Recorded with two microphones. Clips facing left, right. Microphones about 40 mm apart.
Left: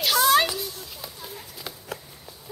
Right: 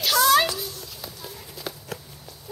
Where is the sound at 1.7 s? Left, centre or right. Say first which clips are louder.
Right 5 dB; centre.